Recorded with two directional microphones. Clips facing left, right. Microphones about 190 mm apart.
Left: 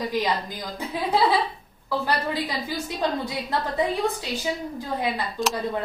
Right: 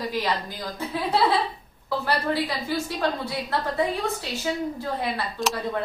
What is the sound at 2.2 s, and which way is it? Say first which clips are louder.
A woman's voice: right 2 dB; 15° left (ahead or behind).